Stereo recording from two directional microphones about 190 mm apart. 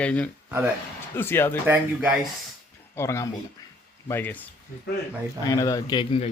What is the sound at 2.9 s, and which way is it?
Speech, 15° left (ahead or behind).